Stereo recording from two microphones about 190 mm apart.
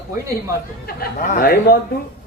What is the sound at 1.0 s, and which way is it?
Speech, 50° left (ahead or behind).